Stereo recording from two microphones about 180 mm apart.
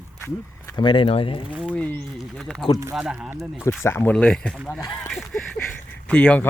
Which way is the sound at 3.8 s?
15° left (ahead or behind).